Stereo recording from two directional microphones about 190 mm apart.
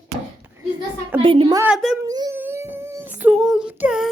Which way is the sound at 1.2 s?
25° right (ahead or behind).